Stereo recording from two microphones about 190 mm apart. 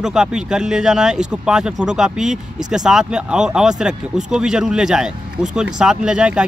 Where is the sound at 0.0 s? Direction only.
5° right (ahead or behind).